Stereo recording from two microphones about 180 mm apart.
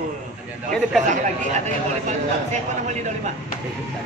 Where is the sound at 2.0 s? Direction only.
40° right (ahead or behind).